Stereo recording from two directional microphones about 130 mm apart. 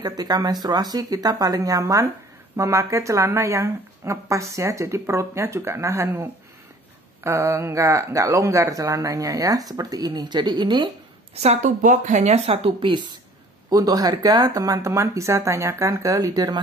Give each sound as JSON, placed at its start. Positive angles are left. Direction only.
{"t": 0.0, "sound": "speech", "side_deg": -30}
{"t": 11.3, "sound": "speech", "side_deg": -60}
{"t": 13.7, "sound": "speech", "side_deg": -30}